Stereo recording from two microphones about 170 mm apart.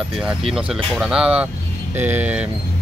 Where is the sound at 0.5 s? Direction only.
5° right (ahead or behind).